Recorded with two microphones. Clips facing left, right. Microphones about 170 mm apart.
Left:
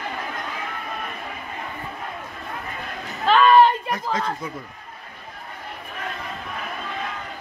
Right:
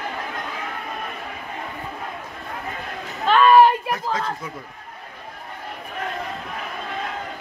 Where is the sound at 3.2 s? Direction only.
Centre (ahead or behind).